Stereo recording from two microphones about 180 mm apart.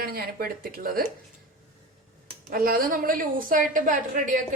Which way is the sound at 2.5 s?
55° right (ahead or behind).